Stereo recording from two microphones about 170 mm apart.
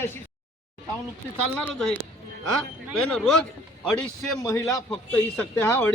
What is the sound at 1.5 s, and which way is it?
Speech, 5° left (ahead or behind).